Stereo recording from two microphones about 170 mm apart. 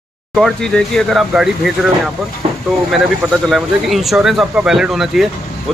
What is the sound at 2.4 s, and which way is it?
Vehicle, 35° right (ahead or behind).